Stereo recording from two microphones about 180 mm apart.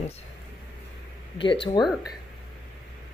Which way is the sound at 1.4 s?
25° left (ahead or behind).